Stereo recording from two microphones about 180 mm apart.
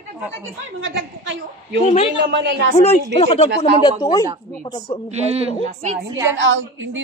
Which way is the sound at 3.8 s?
20° left (ahead or behind).